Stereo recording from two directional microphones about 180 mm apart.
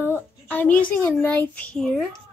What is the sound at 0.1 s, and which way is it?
A child's voice, 10° left (ahead or behind).